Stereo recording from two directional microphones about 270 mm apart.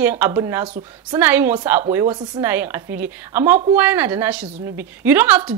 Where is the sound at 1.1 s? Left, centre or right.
Centre.